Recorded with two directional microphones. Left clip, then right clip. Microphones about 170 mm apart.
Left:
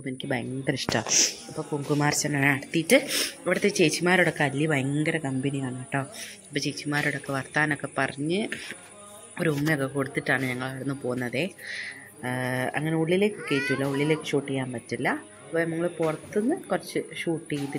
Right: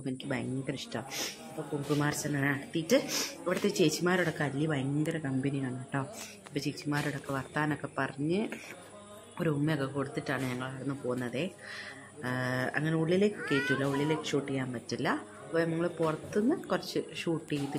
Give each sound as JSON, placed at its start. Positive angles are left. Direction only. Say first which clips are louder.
{"t": 0.0, "sound": "speech", "louder": "left 5 dB", "side_deg": 20}
{"t": 0.7, "sound": "speech", "louder": "left 11 dB", "side_deg": 30}
{"t": 1.0, "sound": "speech", "louder": "left 17 dB", "side_deg": 5}
{"t": 2.0, "sound": "speech", "louder": "left 10 dB", "side_deg": 25}
{"t": 3.4, "sound": "speech", "louder": "left 6 dB", "side_deg": 15}
{"t": 9.4, "sound": "speech", "louder": "left 6 dB", "side_deg": 25}